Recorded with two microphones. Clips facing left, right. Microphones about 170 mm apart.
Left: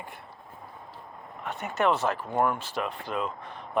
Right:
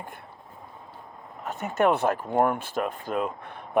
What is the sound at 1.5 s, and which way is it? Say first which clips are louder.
Speech: right 3 dB; 45° right (ahead or behind).